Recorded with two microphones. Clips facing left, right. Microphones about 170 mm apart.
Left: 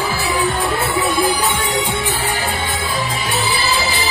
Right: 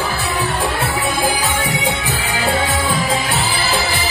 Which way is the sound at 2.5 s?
85° right.